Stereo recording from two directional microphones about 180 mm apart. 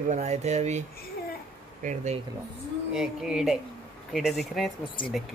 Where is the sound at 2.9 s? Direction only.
5° right (ahead or behind).